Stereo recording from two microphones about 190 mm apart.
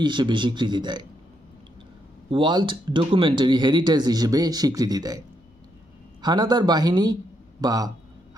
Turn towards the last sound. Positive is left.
turn(degrees=-20)  # may be behind; listen again after turning